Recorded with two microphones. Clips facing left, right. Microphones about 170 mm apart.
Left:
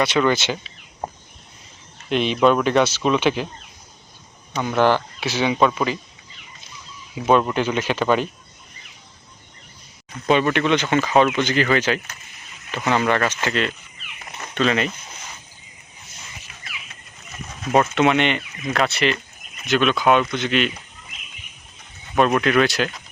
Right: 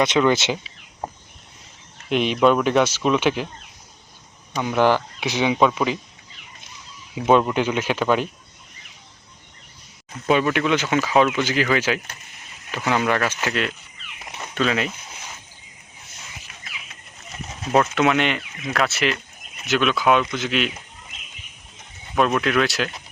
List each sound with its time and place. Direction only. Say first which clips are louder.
0.0 s speech: right 1 dB; 15° right (ahead or behind)
2.0 s speech: even; 5° right (ahead or behind)
4.5 s speech: even; 5° right (ahead or behind)
7.4 s speech: even; 10° right (ahead or behind)
10.2 s speech: left 1 dB; 5° right (ahead or behind)
18.0 s speech: left 2 dB; centre (ahead or behind)
22.1 s speech: left 2 dB; centre (ahead or behind)